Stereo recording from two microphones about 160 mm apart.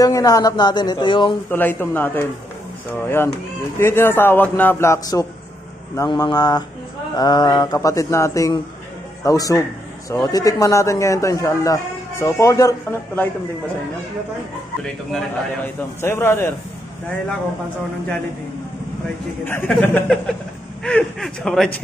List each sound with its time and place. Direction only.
0.0 s a man's voice: 20° left (ahead or behind)
1.5 s a man's voice: 15° left (ahead or behind)
3.7 s a man's voice: 15° left (ahead or behind)
15.1 s a man's voice: 15° left (ahead or behind)
19.4 s a man's voice: 15° left (ahead or behind)